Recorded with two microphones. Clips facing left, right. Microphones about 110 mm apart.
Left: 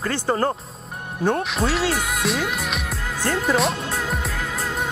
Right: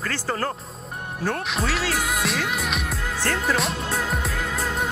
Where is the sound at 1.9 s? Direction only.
Centre (ahead or behind).